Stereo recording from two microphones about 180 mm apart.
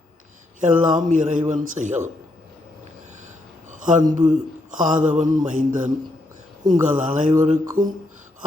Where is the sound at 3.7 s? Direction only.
45° right (ahead or behind).